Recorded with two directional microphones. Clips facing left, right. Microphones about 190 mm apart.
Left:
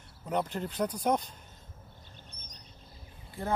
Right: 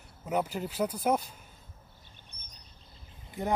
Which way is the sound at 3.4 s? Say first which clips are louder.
Right 3 dB; 20° right (ahead or behind).